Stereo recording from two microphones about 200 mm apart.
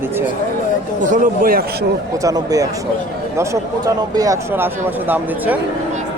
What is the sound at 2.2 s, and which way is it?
Speech, 15° right (ahead or behind).